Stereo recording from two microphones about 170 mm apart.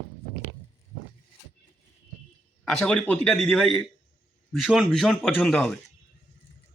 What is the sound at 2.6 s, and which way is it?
A man's voice, 5° left (ahead or behind).